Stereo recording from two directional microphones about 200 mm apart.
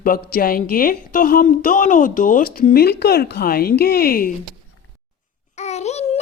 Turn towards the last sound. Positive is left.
turn(degrees=35)  # may be behind; listen again after turning